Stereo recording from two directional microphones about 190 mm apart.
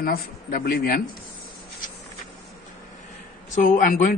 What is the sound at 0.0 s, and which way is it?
Speech, 50° left (ahead or behind).